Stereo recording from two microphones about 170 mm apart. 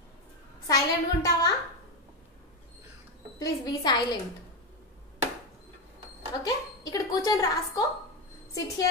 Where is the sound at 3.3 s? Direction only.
25° left (ahead or behind).